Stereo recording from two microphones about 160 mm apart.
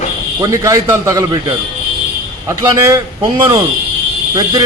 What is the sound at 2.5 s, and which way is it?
Speech, 20° right (ahead or behind).